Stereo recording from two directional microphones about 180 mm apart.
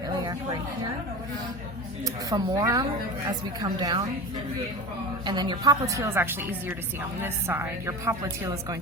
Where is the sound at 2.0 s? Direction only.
20° right (ahead or behind).